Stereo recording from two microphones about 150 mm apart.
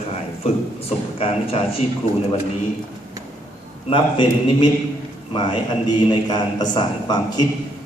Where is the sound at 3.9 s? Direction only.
35° left (ahead or behind).